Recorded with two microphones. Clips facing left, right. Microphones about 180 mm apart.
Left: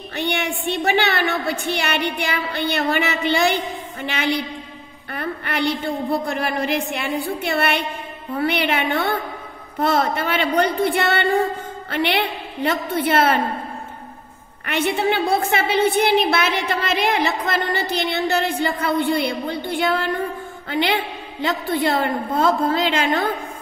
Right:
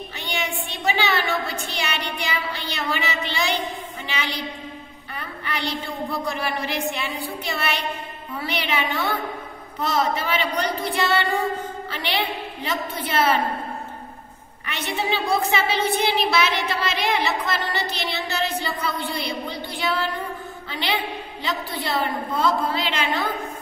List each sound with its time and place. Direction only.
0.1 s a woman's voice: 60° left (ahead or behind)
14.7 s a woman's voice: 55° left (ahead or behind)